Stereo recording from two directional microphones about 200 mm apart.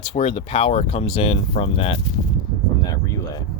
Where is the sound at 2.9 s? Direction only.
15° left (ahead or behind).